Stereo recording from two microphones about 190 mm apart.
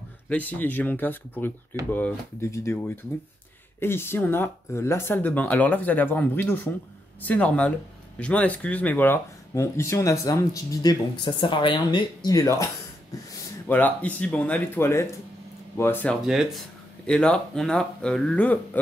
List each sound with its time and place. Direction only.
0.3 s speech: 10° left (ahead or behind)
16.3 s speech: centre (ahead or behind)